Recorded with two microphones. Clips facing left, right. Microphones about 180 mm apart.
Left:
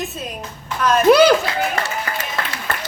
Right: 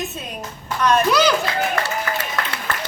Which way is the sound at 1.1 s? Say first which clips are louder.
Left 7 dB; 60° left (ahead or behind).